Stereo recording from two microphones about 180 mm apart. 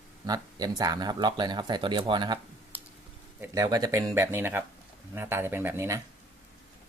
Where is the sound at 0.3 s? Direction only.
20° right (ahead or behind).